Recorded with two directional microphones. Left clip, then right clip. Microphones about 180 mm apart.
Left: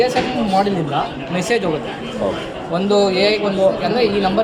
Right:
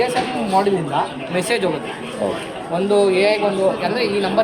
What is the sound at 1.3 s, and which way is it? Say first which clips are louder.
Speech: left 1 dB; 20° right (ahead or behind).